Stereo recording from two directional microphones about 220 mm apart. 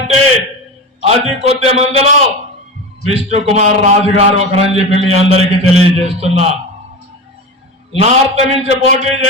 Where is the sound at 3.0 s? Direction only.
30° right (ahead or behind).